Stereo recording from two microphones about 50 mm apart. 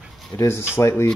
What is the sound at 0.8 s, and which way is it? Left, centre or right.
Speech, left.